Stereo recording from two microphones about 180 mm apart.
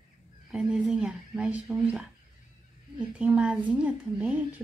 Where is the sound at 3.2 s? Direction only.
5° right (ahead or behind).